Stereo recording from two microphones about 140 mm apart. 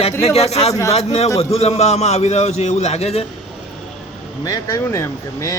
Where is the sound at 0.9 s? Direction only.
50° left (ahead or behind).